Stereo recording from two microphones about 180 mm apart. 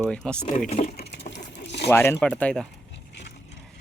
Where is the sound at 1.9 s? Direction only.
15° left (ahead or behind).